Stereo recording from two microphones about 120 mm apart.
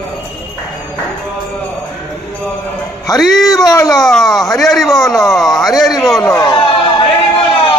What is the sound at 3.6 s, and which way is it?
Speech, 30° left (ahead or behind).